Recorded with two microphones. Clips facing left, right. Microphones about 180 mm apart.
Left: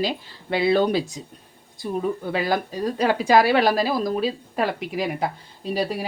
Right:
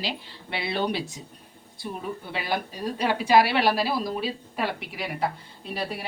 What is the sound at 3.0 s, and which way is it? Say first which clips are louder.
A woman's voice: left 3 dB; 45° left (ahead or behind).